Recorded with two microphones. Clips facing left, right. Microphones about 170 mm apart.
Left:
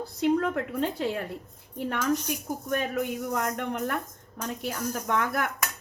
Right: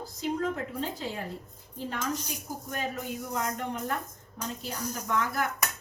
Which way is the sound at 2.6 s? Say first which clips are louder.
Left 6 dB; 60° left (ahead or behind).